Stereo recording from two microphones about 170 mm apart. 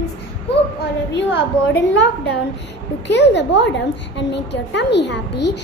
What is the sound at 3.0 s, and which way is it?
A child's voice, 90° left.